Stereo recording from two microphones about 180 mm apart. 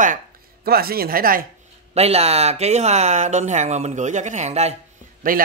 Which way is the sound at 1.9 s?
35° right (ahead or behind).